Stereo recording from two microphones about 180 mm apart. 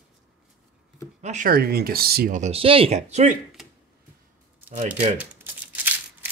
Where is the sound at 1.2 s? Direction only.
40° right (ahead or behind); by 2.4 s 55° right (ahead or behind).